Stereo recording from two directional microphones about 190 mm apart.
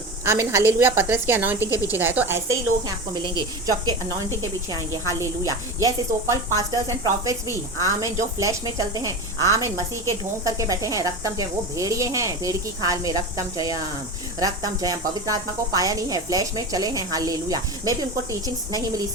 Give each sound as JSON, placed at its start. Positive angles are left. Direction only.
{"t": 0.3, "sound": "speech", "side_deg": -15}
{"t": 1.7, "sound": "speech", "side_deg": 15}
{"t": 2.0, "sound": "speech", "side_deg": -10}